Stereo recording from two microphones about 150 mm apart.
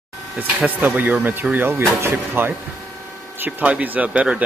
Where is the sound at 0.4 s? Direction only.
10° right (ahead or behind).